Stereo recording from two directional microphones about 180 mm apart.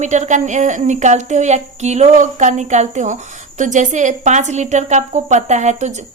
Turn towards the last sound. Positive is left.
turn(degrees=-40)  # may be behind; listen again after turning